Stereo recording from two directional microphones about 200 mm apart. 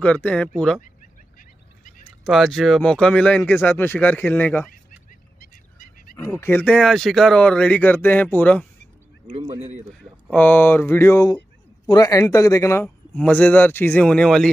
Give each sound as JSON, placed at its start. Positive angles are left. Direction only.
{"t": 0.0, "sound": "a man's voice", "side_deg": 5}
{"t": 2.2, "sound": "a man's voice", "side_deg": 0}
{"t": 5.4, "sound": "fowl", "side_deg": 45}
{"t": 6.1, "sound": "a man's voice", "side_deg": 10}
{"t": 9.5, "sound": "speech", "side_deg": -35}
{"t": 10.3, "sound": "a man's voice", "side_deg": 10}